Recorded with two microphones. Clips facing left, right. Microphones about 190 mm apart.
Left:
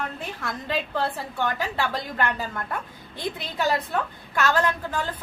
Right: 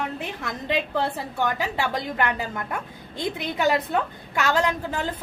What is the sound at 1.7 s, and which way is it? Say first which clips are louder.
A woman's voice: right 1 dB; 15° right (ahead or behind).